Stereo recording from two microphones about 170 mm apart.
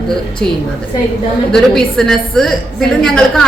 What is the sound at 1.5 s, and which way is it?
A woman's voice, centre (ahead or behind).